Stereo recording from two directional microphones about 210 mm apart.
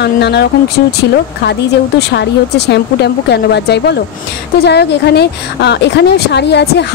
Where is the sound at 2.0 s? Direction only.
50° left (ahead or behind).